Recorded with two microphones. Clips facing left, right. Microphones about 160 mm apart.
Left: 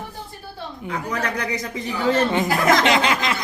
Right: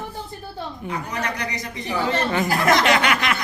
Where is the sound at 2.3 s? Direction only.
20° left (ahead or behind).